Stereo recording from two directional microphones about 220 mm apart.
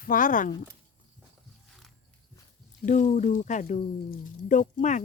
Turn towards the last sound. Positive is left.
turn(degrees=35)  # may be behind; listen again after turning